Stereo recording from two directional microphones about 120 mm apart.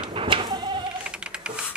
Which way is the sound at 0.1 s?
45° right (ahead or behind).